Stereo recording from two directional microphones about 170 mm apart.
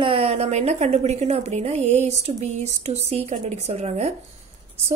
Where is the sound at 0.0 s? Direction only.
35° right (ahead or behind).